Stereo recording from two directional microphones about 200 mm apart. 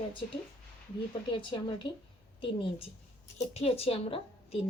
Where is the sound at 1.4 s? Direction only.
25° left (ahead or behind).